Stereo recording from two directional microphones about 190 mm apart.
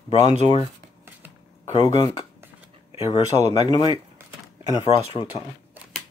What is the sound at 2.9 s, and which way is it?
Speech, 30° left (ahead or behind).